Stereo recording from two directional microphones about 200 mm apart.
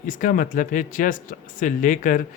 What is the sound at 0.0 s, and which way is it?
Speech, 40° left (ahead or behind).